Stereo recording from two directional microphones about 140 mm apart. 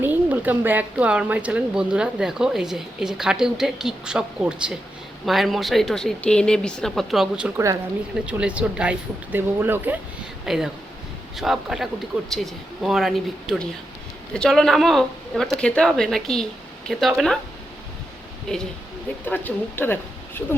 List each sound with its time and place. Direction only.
0.0 s speech: 15° right (ahead or behind)
7.5 s speech: 20° right (ahead or behind)
8.3 s speech: 10° right (ahead or behind)
10.4 s speech: 5° right (ahead or behind)
18.5 s speech: centre (ahead or behind)
19.2 s speech: 15° left (ahead or behind)